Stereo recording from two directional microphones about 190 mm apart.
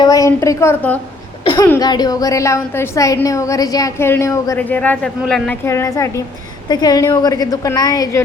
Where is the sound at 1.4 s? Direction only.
25° left (ahead or behind).